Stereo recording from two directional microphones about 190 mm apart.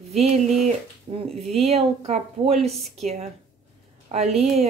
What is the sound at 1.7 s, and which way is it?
A woman's voice, 35° right (ahead or behind).